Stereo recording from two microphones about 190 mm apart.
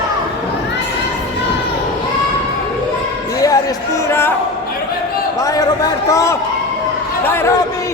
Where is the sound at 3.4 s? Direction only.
20° left (ahead or behind).